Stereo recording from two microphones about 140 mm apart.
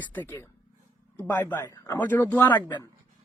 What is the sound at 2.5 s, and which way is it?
Speech, 30° left (ahead or behind).